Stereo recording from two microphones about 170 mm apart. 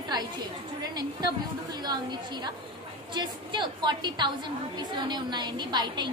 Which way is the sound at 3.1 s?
25° right (ahead or behind).